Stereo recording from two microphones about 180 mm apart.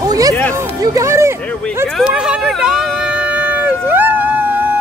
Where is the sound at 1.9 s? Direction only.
5° right (ahead or behind).